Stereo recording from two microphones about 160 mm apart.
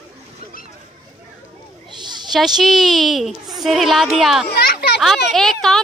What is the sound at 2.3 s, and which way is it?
Speech, centre (ahead or behind).